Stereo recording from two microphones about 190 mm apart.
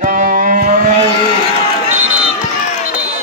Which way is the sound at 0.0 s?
45° right (ahead or behind).